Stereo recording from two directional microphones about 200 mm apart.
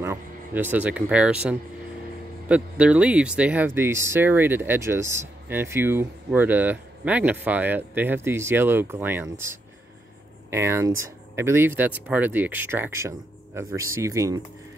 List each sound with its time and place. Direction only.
0.0 s speech: 10° right (ahead or behind)